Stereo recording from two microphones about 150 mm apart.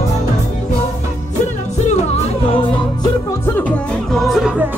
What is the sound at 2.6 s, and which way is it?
Music, 25° left (ahead or behind).